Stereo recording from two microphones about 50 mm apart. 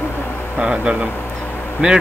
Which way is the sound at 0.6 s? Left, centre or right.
Centre.